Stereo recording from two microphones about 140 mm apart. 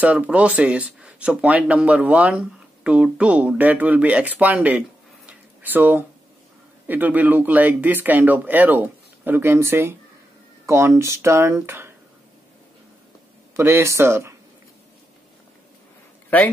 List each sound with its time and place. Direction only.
0.0 s speech: 10° right (ahead or behind)
13.6 s speech: 15° right (ahead or behind)